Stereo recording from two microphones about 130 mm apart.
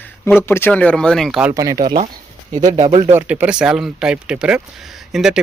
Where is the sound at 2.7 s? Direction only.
50° right (ahead or behind).